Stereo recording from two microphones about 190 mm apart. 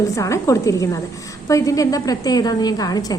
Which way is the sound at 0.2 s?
15° left (ahead or behind).